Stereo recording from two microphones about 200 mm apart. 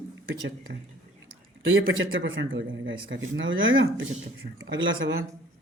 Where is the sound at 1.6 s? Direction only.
75° right (ahead or behind).